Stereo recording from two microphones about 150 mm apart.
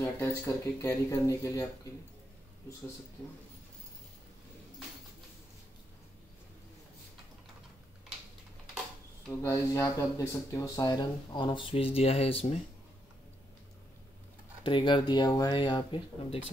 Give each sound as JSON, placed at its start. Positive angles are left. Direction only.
{"t": 0.0, "sound": "speech", "side_deg": 20}
{"t": 9.4, "sound": "speech", "side_deg": 20}
{"t": 14.6, "sound": "speech", "side_deg": 35}